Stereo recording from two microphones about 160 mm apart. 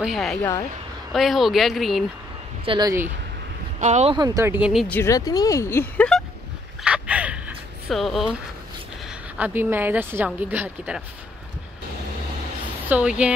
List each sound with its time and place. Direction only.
0.0 s speech: centre (ahead or behind)
2.6 s speech: 35° right (ahead or behind)
3.8 s speech: 45° right (ahead or behind)
4.1 s a woman's voice: 25° right (ahead or behind); by 4.8 s 5° right (ahead or behind)
4.8 s speech: 10° left (ahead or behind)
5.1 s speech: 25° left (ahead or behind)
6.8 s a sound: 5° right (ahead or behind)
9.0 s a woman's voice: 10° right (ahead or behind)
12.9 s a woman's voice: 5° right (ahead or behind)